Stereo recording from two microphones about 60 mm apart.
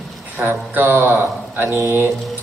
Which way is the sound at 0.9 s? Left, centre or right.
Right.